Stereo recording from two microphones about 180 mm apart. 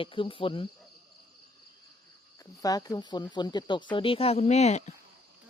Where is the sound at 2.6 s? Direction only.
20° left (ahead or behind).